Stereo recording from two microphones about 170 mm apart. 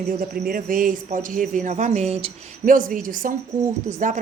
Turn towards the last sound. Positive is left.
turn(degrees=-45)  # may be behind; listen again after turning